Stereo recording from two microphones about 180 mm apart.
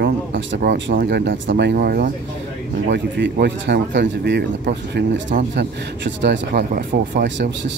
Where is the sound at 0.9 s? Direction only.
70° right (ahead or behind).